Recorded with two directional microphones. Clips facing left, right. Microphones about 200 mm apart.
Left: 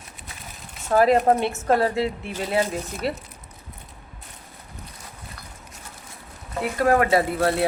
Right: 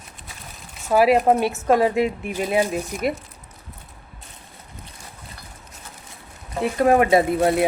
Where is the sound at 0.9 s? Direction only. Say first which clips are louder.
Right 1 dB; 10° right (ahead or behind).